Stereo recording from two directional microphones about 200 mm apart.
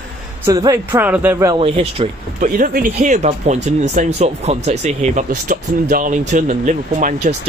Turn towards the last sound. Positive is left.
turn(degrees=-40)  # may be behind; listen again after turning